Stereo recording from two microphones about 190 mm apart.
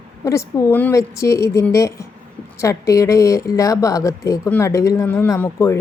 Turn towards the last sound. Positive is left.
turn(degrees=15)  # may be behind; listen again after turning